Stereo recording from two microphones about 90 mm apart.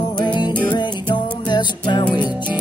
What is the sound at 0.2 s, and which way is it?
Music, 55° left (ahead or behind).